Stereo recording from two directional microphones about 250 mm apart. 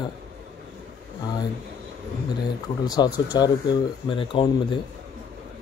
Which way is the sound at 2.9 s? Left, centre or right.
Centre.